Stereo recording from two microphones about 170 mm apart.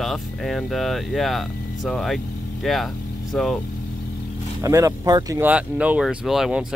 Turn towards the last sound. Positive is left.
turn(degrees=-5)  # may be behind; listen again after turning